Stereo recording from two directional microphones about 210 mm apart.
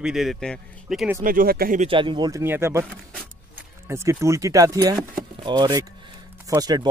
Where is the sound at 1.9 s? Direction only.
25° right (ahead or behind).